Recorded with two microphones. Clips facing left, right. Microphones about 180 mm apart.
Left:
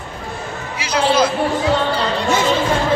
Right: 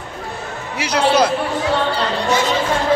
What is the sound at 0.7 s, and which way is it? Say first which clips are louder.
Speech: right 1 dB; 65° right (ahead or behind).